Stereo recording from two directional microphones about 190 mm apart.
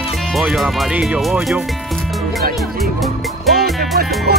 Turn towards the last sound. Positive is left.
turn(degrees=-55)  # may be behind; listen again after turning